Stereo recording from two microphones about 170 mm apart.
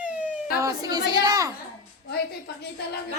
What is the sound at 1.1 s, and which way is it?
Speech, 25° right (ahead or behind).